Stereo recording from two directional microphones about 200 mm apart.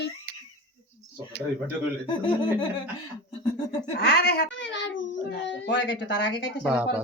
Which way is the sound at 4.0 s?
55° left (ahead or behind).